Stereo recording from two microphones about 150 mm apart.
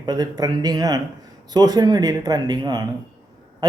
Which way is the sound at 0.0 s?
25° right (ahead or behind).